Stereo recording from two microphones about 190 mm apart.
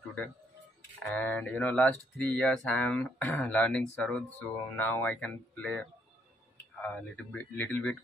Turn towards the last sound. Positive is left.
turn(degrees=5)  # may be behind; listen again after turning